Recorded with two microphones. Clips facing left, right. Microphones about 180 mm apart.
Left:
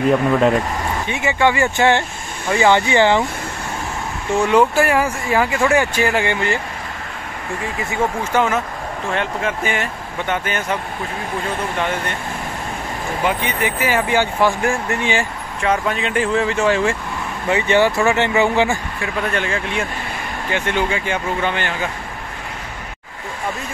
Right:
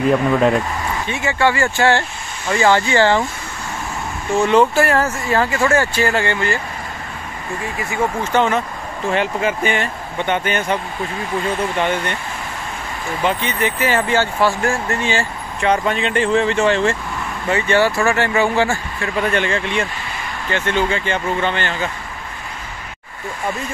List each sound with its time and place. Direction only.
0.1 s speech: centre (ahead or behind)
1.0 s speech: 15° left (ahead or behind)
4.5 s speech: 10° left (ahead or behind)
8.3 s speech: 5° left (ahead or behind)
11.8 s speech: centre (ahead or behind)
13.2 s speech: 10° left (ahead or behind)
15.6 s speech: 5° left (ahead or behind)
17.5 s speech: 15° left (ahead or behind)
19.3 s speech: 5° left (ahead or behind)